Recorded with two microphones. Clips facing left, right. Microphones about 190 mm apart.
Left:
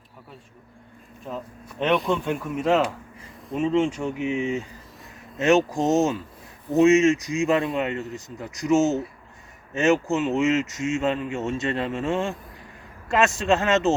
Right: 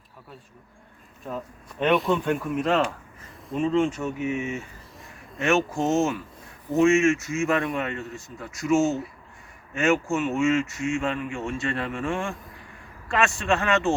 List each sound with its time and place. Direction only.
1.8 s speech: 5° right (ahead or behind); by 13.9 s 20° left (ahead or behind)